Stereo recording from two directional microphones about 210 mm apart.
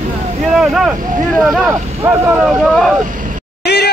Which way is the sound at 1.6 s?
10° right (ahead or behind).